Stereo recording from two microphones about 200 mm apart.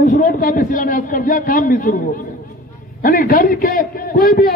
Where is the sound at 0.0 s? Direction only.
35° left (ahead or behind).